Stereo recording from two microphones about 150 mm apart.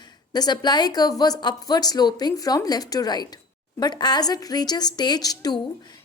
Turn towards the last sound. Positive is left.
turn(degrees=25)  # may be behind; listen again after turning